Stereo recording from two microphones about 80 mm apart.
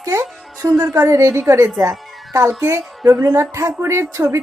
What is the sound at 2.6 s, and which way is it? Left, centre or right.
Speech, right.